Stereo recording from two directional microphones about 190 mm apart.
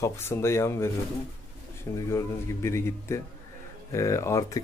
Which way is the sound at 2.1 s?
15° left (ahead or behind).